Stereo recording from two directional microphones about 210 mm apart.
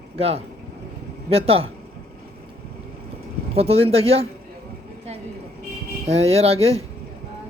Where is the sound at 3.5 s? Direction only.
30° right (ahead or behind).